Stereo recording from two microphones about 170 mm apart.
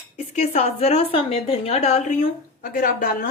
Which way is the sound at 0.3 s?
35° left (ahead or behind).